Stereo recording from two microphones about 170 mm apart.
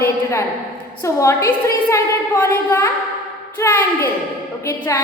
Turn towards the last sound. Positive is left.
turn(degrees=20)  # may be behind; listen again after turning